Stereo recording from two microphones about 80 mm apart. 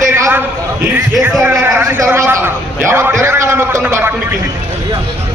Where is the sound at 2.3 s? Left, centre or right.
Right.